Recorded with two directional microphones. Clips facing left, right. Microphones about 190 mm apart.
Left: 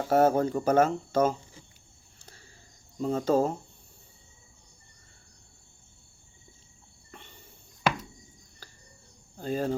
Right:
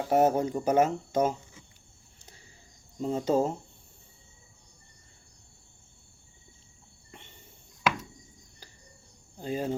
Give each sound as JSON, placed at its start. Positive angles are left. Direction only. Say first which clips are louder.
{"t": 0.1, "sound": "speech", "louder": "left 1 dB", "side_deg": -15}
{"t": 2.2, "sound": "a sound", "louder": "left 2 dB", "side_deg": -20}
{"t": 3.0, "sound": "speech", "louder": "left 1 dB", "side_deg": -20}
{"t": 7.1, "sound": "cricket", "louder": "left 2 dB", "side_deg": -20}
{"t": 9.4, "sound": "speech", "louder": "left 2 dB", "side_deg": -15}